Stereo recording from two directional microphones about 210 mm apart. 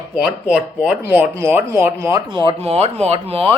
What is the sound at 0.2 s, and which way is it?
Speech, 5° right (ahead or behind).